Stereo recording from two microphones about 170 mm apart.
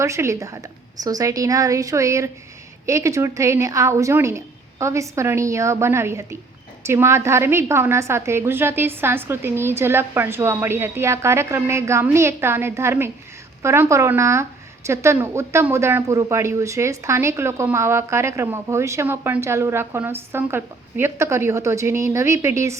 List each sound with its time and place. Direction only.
0.0 s a woman's voice: 15° right (ahead or behind)